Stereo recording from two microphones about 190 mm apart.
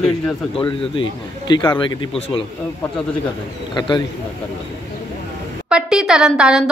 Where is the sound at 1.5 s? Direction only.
25° left (ahead or behind).